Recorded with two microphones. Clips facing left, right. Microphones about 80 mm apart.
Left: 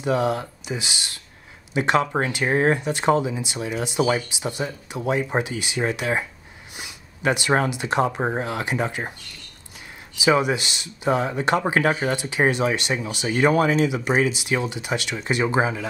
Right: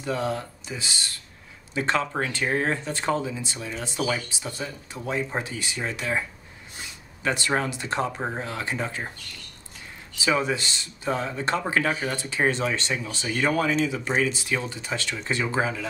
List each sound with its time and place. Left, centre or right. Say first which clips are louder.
0.0 s speech: left 5 dB; centre
6.8 s a sound: left 5 dB; centre
7.6 s speech: left 5 dB; centre
10.1 s speech: left 5 dB; centre